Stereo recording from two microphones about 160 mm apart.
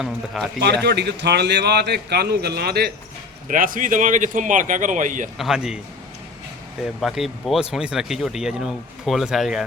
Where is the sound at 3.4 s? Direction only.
60° right (ahead or behind).